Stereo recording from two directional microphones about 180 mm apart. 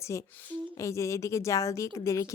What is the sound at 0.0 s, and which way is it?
A woman's voice, 15° left (ahead or behind).